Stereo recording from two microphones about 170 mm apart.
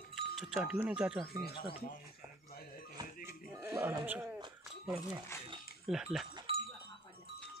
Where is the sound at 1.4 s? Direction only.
65° left (ahead or behind).